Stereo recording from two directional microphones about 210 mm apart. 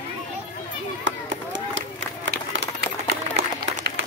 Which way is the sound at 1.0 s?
65° right (ahead or behind).